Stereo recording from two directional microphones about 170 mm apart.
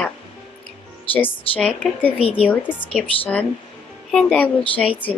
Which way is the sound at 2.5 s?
10° left (ahead or behind).